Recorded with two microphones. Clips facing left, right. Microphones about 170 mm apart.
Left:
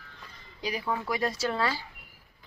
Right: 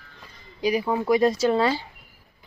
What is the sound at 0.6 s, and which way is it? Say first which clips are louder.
Speech: right 9 dB; 15° right (ahead or behind).